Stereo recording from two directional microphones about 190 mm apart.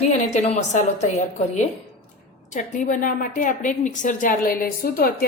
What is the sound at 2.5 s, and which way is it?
A woman's voice, 45° left (ahead or behind).